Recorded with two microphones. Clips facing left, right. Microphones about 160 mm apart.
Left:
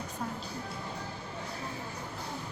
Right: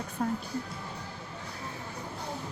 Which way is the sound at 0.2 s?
45° right (ahead or behind).